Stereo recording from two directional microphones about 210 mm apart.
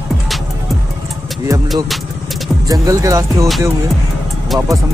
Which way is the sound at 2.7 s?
15° right (ahead or behind).